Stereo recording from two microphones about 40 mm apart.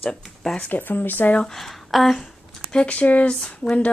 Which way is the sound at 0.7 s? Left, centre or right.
Left.